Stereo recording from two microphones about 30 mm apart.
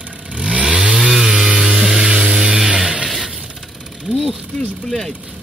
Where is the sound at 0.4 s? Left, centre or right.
Right.